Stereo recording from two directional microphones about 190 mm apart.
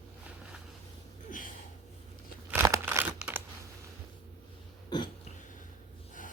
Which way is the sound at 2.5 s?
15° right (ahead or behind).